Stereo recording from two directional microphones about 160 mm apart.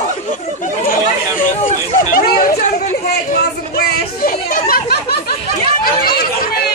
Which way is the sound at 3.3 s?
65° left (ahead or behind).